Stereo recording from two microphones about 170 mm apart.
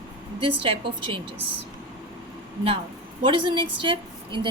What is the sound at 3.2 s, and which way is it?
A woman's voice, 30° right (ahead or behind).